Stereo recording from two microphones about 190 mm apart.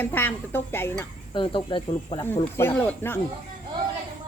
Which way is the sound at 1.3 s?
25° left (ahead or behind).